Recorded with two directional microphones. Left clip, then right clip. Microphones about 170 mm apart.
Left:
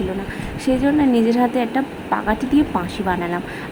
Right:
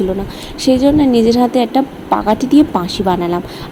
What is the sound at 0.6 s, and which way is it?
A woman's voice, 30° right (ahead or behind).